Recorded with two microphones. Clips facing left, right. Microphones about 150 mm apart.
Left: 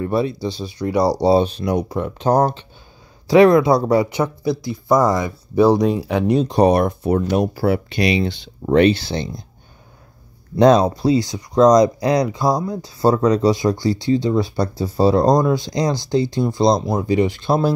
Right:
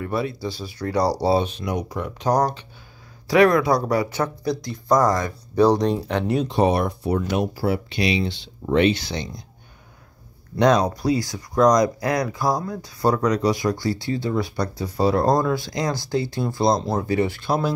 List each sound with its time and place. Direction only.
0.0 s speech: 25° left (ahead or behind)
1.2 s speech: 30° left (ahead or behind)
4.2 s speech: 5° left (ahead or behind)
6.4 s speech: 40° left (ahead or behind)
10.6 s speech: 30° left (ahead or behind)
15.2 s speech: 20° left (ahead or behind)